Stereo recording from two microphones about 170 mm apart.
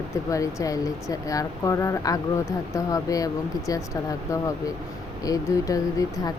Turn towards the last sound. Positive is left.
turn(degrees=20)  # may be behind; listen again after turning